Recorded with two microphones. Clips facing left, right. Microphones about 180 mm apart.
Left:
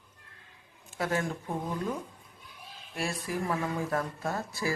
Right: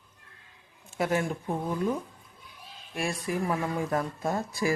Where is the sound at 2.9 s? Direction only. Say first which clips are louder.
Right 3 dB; 15° right (ahead or behind).